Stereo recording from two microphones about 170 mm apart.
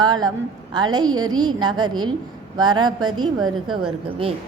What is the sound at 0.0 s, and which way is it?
A woman's voice, 25° right (ahead or behind).